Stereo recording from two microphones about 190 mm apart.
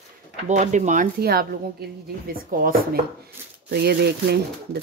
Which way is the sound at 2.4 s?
50° right (ahead or behind).